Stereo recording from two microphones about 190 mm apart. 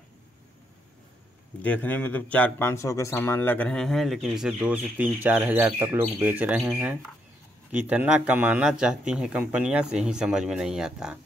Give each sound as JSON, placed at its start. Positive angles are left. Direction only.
{"t": 1.6, "sound": "a man's voice", "side_deg": 10}